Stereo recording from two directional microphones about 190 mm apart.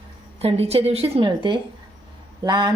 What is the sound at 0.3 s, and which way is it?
A woman's voice, 30° right (ahead or behind).